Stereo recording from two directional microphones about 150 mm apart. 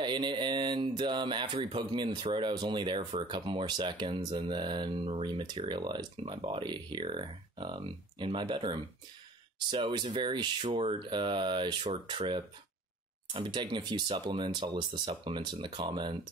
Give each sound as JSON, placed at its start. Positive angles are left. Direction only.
{"t": 0.0, "sound": "speech", "side_deg": -30}